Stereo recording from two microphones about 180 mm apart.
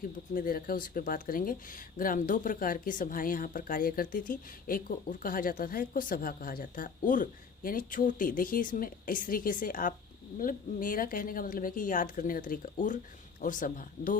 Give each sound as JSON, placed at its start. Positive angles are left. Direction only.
{"t": 0.3, "sound": "speech", "side_deg": 55}